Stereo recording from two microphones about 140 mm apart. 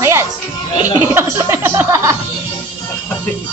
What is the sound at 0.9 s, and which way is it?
Speech, 15° right (ahead or behind).